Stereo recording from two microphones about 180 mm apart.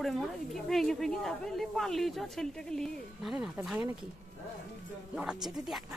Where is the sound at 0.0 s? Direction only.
Centre (ahead or behind).